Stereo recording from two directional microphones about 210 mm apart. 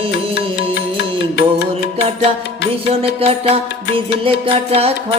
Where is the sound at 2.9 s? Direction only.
30° right (ahead or behind).